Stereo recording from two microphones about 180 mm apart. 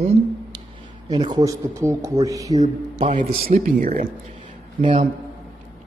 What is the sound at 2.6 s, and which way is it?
Speech, 40° right (ahead or behind).